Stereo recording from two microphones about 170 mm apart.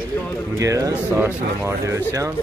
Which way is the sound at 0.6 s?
20° right (ahead or behind).